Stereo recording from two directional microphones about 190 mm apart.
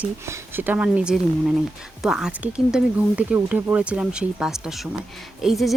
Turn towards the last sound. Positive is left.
turn(degrees=0)  # may be behind; listen again after turning